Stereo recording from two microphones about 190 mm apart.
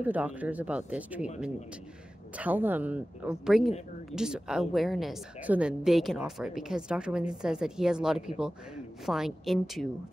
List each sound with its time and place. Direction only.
0.0 s speech: 10° right (ahead or behind)
2.3 s a woman's voice: 10° right (ahead or behind)